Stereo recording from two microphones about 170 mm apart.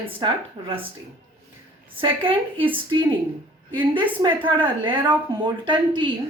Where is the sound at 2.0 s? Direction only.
30° right (ahead or behind).